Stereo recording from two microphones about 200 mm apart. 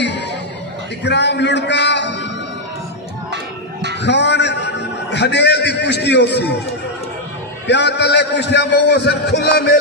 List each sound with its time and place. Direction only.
1.0 s a man's voice: 60° left (ahead or behind)
4.0 s a man's voice: 60° left (ahead or behind)
7.6 s a man's voice: 60° left (ahead or behind)